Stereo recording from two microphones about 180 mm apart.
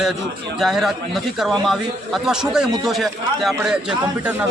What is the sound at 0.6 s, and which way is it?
Speech, centre (ahead or behind).